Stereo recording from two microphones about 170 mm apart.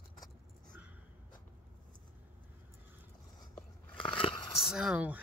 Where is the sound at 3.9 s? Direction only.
30° left (ahead or behind).